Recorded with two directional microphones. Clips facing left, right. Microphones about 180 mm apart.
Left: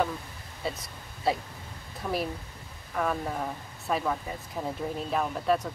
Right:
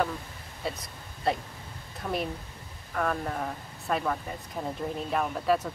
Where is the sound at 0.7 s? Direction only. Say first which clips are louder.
Even; centre (ahead or behind).